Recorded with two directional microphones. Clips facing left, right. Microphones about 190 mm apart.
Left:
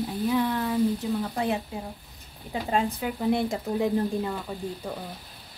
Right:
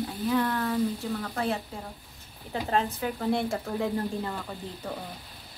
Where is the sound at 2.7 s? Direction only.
10° left (ahead or behind).